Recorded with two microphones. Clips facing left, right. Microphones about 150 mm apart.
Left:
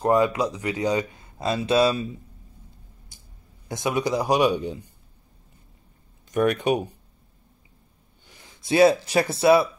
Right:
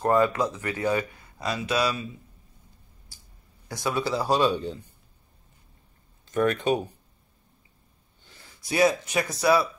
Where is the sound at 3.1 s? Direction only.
20° left (ahead or behind).